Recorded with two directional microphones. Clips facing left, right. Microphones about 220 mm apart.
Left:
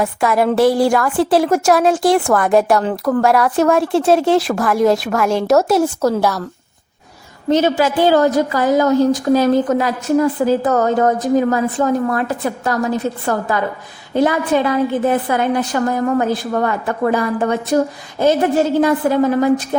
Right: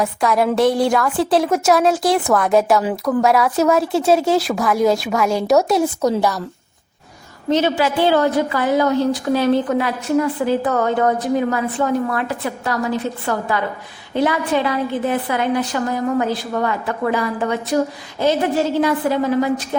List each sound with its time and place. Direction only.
0.0 s a woman's voice: centre (ahead or behind)
7.5 s a woman's voice: 45° left (ahead or behind)
14.1 s a woman's voice: 45° left (ahead or behind)